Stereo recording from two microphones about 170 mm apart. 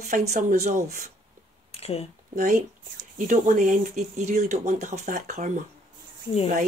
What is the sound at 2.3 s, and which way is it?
Speech, 45° right (ahead or behind).